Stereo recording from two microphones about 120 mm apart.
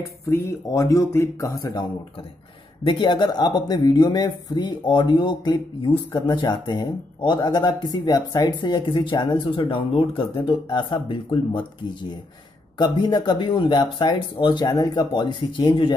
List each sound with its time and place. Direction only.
0.3 s speech: 25° left (ahead or behind); by 11.6 s 45° left (ahead or behind)
12.7 s speech: 40° left (ahead or behind)